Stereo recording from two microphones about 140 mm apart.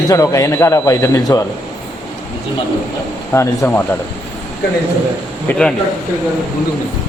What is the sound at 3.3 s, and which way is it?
Speech, 15° left (ahead or behind).